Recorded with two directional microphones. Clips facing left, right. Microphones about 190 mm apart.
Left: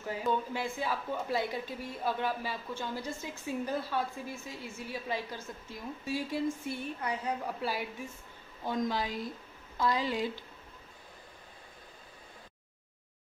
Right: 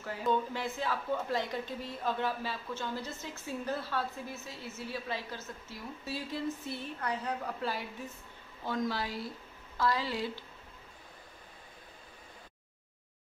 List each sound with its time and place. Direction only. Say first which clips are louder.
0.0 s a woman's voice: even; 10° left (ahead or behind)